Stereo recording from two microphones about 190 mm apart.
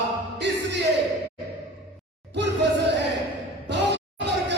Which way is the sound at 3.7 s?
65° right (ahead or behind).